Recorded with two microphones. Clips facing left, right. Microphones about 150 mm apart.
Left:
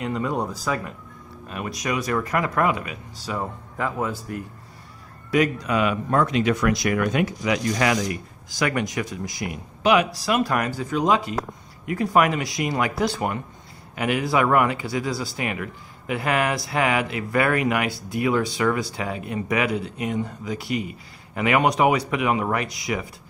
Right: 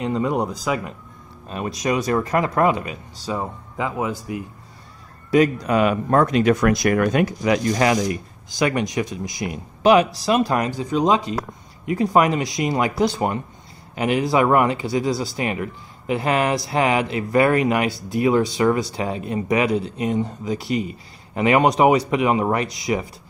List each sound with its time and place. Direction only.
0.0 s speech: 25° right (ahead or behind)
1.5 s speech: 30° right (ahead or behind); by 4.5 s 10° right (ahead or behind)
5.3 s speech: 35° right (ahead or behind)